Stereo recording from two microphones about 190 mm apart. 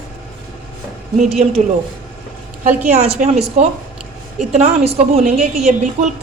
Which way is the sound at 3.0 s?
35° right (ahead or behind).